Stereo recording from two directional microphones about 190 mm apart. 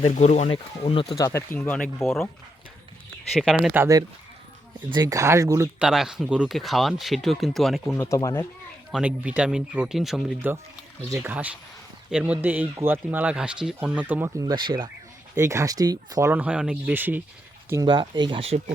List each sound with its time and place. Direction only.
0.0 s speech: 35° left (ahead or behind)
1.3 s speech: 10° left (ahead or behind)
3.3 s speech: centre (ahead or behind)
4.9 s speech: 20° right (ahead or behind)
5.8 s speech: 5° right (ahead or behind)
7.9 s speech: 15° left (ahead or behind)
8.9 s speech: 5° right (ahead or behind)
16.3 s speech: 5° right (ahead or behind)
17.7 s speech: 20° right (ahead or behind)